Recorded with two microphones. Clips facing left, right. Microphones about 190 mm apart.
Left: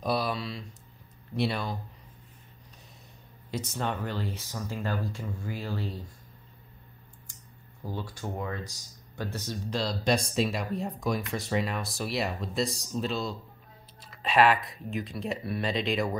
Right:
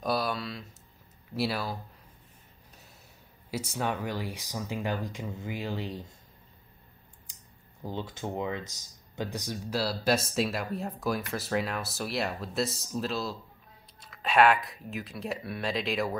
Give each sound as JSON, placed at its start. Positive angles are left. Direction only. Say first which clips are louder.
{"t": 0.0, "sound": "a sound", "louder": "left 1 dB", "side_deg": 0}
{"t": 1.3, "sound": "speech", "louder": "left 1 dB", "side_deg": -5}
{"t": 3.4, "sound": "speech", "louder": "right 1 dB", "side_deg": -10}
{"t": 7.8, "sound": "speech", "louder": "right 1 dB", "side_deg": -20}